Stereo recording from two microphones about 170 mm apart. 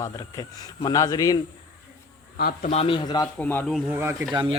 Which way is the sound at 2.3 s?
60° left (ahead or behind).